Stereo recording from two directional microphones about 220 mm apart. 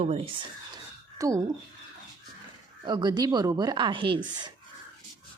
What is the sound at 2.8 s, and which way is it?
A woman's voice, 20° right (ahead or behind).